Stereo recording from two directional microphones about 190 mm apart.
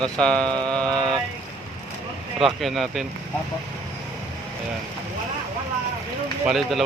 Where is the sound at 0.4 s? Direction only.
25° right (ahead or behind).